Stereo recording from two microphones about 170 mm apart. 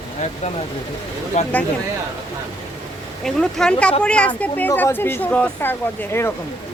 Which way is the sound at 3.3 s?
Centre (ahead or behind).